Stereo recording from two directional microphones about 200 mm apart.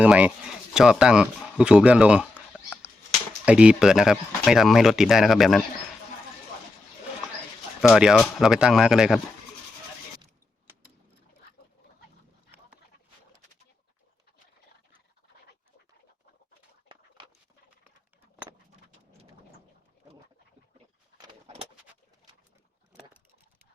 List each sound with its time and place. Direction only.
0.0 s speech: 5° right (ahead or behind)
7.8 s speech: 5° right (ahead or behind)
21.2 s vehicle: 25° right (ahead or behind)